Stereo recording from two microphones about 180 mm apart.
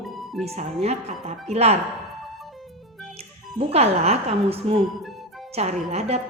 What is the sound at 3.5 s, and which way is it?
Speech, 35° right (ahead or behind).